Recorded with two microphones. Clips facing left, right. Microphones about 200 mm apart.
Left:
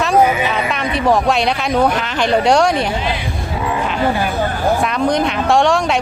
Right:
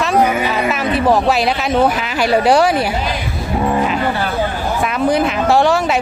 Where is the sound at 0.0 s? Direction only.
Centre (ahead or behind).